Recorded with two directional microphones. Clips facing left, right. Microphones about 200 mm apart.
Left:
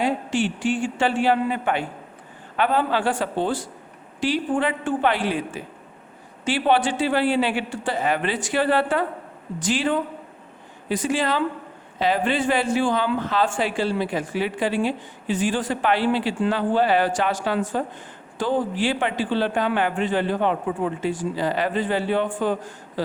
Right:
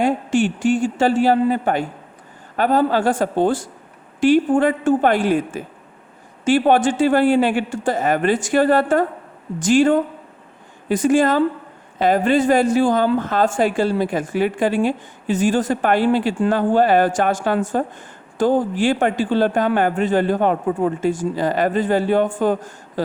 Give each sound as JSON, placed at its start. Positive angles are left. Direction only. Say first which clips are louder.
{"t": 0.0, "sound": "a woman's voice", "louder": "right 5 dB", "side_deg": -50}